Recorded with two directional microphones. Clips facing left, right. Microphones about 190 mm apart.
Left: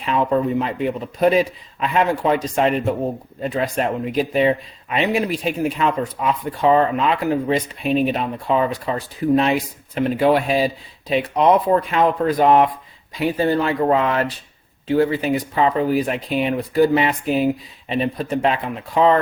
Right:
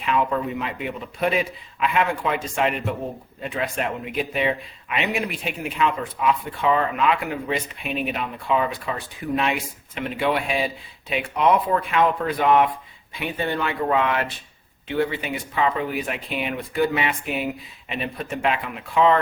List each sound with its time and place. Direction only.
0.0 s speech: 35° left (ahead or behind)